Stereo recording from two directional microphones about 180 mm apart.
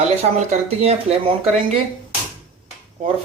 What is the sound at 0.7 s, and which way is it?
Speech, 35° right (ahead or behind).